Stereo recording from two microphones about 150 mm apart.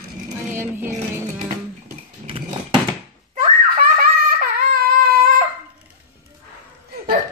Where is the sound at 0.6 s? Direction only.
15° right (ahead or behind).